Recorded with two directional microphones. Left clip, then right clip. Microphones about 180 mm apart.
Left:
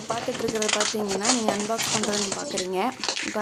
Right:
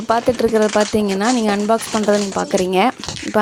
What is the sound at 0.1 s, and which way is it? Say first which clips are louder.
Speech: right 12 dB; 45° right (ahead or behind).